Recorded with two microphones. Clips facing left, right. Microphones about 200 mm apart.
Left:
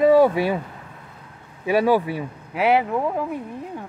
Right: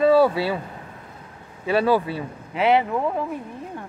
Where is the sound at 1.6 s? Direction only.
15° left (ahead or behind).